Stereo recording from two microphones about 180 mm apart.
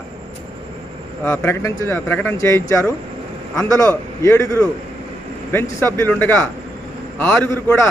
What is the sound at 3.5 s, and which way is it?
A man's voice, 15° left (ahead or behind).